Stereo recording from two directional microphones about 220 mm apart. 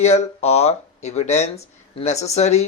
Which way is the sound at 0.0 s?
30° left (ahead or behind).